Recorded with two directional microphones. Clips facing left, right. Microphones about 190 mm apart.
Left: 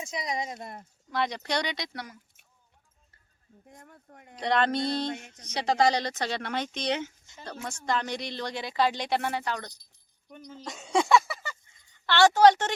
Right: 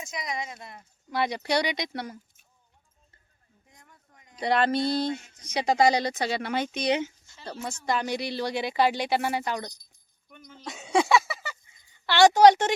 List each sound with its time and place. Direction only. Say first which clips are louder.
0.0 s speech: left 2 dB; 30° left (ahead or behind); by 0.9 s 50° left (ahead or behind)
1.1 s speech: right 3 dB; 10° right (ahead or behind); by 2.1 s 25° right (ahead or behind)
3.7 s speech: left 8 dB; 55° left (ahead or behind)
4.4 s speech: right 2 dB; 5° right (ahead or behind)
10.2 s speech: left 5 dB; 35° left (ahead or behind)
10.6 s a sound: right 2 dB; centre (ahead or behind)
12.0 s speech: right 2 dB; 15° right (ahead or behind)